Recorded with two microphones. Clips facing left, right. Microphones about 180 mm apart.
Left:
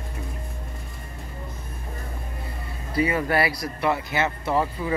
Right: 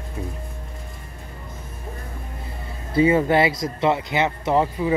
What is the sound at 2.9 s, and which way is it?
Speech, 25° right (ahead or behind).